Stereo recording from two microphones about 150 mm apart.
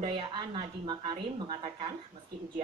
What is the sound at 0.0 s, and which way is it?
A woman's voice, 35° right (ahead or behind).